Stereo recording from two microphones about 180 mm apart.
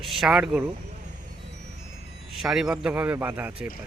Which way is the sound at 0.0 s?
Centre (ahead or behind).